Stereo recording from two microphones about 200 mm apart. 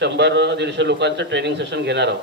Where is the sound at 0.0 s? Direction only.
60° right (ahead or behind).